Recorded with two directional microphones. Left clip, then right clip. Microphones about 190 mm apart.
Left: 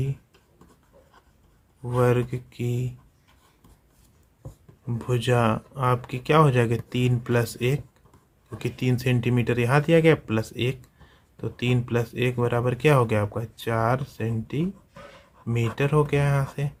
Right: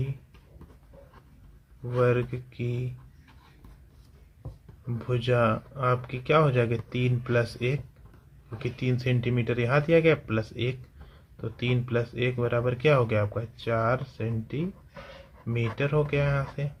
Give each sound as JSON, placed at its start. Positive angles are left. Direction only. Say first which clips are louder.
{"t": 1.9, "sound": "speech", "louder": "left 2 dB", "side_deg": 40}
{"t": 4.9, "sound": "speech", "louder": "left 2 dB", "side_deg": 45}